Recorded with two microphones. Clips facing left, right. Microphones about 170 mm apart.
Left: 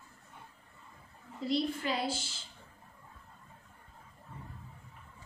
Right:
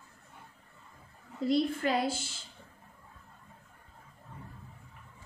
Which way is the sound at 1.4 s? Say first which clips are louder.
Right 4 dB; 50° right (ahead or behind).